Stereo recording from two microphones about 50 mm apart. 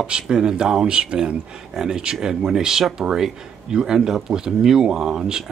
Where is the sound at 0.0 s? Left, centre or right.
Centre.